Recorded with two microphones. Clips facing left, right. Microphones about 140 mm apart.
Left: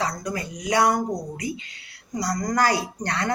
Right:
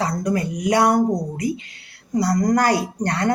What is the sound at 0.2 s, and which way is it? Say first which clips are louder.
Speech: right 8 dB; 55° right (ahead or behind).